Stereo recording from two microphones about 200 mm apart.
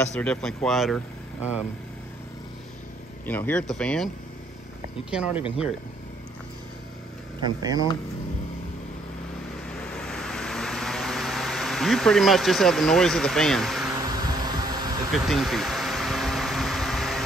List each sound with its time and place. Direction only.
0.1 s speech: 5° left (ahead or behind)
3.3 s speech: 10° left (ahead or behind)
5.1 s speech: 5° right (ahead or behind)
7.4 s speech: 20° right (ahead or behind)
9.9 s vehicle: centre (ahead or behind)
14.1 s a sound: 20° right (ahead or behind)
15.1 s vehicle: centre (ahead or behind)